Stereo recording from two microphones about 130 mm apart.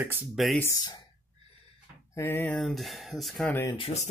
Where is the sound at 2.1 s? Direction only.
20° left (ahead or behind).